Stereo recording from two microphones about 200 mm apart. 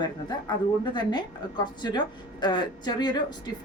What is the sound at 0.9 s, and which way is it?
A woman's voice, 20° left (ahead or behind).